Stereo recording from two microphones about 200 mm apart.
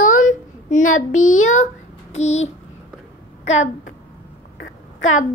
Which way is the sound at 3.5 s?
35° left (ahead or behind).